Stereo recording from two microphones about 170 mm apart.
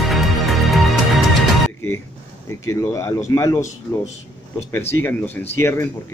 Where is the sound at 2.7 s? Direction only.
15° left (ahead or behind).